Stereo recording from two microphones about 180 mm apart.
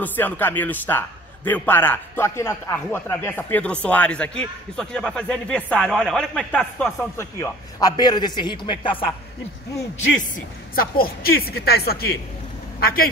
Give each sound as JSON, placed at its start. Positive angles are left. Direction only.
{"t": 0.0, "sound": "a man's voice", "side_deg": 10}
{"t": 10.3, "sound": "speech", "side_deg": 55}